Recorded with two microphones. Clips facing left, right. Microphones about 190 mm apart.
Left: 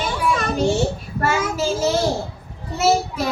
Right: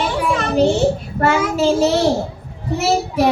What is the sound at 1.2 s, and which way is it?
Speech, 60° right (ahead or behind).